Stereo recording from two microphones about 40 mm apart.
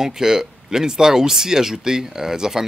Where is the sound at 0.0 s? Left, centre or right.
Centre.